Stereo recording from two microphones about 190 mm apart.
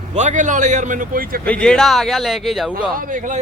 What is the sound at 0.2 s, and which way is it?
Speech, 40° right (ahead or behind).